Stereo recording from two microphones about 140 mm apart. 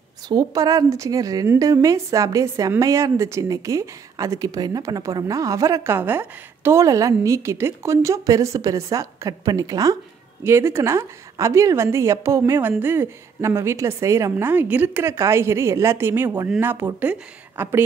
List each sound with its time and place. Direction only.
0.3 s a woman's voice: 25° right (ahead or behind)